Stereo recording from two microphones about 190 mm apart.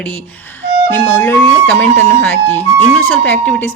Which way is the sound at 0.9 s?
15° left (ahead or behind).